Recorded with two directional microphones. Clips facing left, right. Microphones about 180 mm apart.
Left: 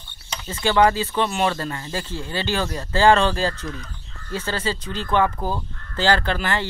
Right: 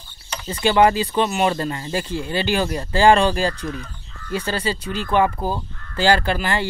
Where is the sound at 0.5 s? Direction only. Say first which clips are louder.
Right 2 dB; 15° right (ahead or behind).